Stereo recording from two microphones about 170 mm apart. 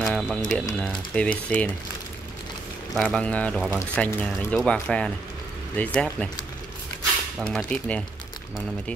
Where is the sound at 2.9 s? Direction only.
5° left (ahead or behind).